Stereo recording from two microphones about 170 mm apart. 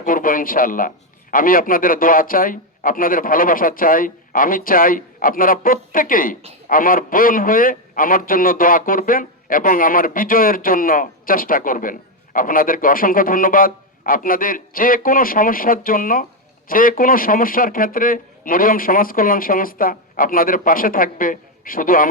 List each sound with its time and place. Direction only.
0.0 s a man's voice: 55° left (ahead or behind)